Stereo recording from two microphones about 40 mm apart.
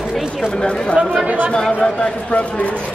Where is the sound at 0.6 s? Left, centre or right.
Left.